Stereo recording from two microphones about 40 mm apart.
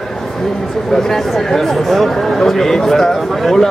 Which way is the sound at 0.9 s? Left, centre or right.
Centre.